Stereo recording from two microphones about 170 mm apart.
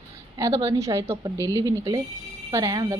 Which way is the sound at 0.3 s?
20° right (ahead or behind).